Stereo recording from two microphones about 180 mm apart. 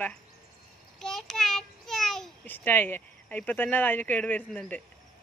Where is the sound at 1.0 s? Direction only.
Centre (ahead or behind).